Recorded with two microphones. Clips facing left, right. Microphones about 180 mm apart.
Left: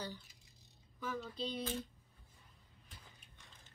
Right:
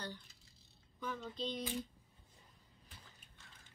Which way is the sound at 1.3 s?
10° left (ahead or behind).